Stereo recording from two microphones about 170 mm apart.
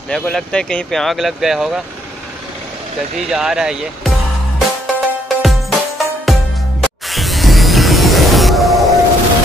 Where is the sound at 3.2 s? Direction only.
5° right (ahead or behind).